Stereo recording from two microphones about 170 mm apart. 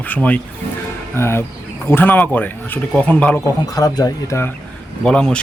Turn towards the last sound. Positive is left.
turn(degrees=5)  # may be behind; listen again after turning